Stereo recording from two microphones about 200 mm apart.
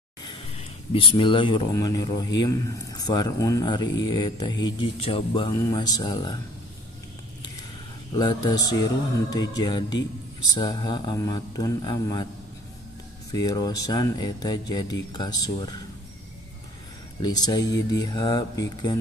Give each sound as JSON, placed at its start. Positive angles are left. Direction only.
{"t": 0.2, "sound": "speech", "side_deg": 25}
{"t": 8.2, "sound": "speech", "side_deg": 20}
{"t": 13.3, "sound": "speech", "side_deg": 20}
{"t": 17.2, "sound": "speech", "side_deg": 20}